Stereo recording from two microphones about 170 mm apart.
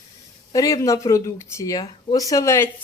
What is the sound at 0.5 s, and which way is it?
Speech, 20° left (ahead or behind).